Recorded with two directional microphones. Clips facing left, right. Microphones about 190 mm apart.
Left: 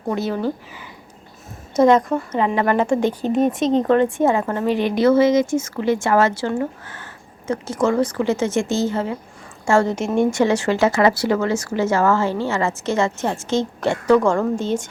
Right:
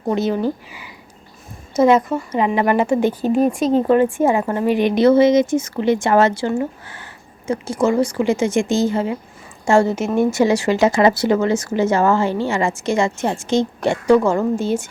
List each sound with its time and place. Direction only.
0.1 s a woman's voice: 20° right (ahead or behind)